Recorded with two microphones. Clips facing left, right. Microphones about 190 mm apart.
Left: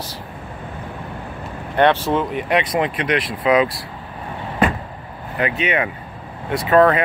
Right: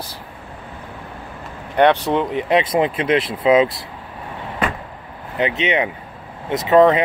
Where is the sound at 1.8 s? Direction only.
15° right (ahead or behind).